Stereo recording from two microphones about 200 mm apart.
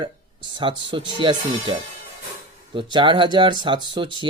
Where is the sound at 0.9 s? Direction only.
25° right (ahead or behind).